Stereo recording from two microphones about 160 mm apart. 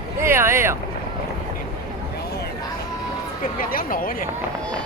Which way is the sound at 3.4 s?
60° left (ahead or behind).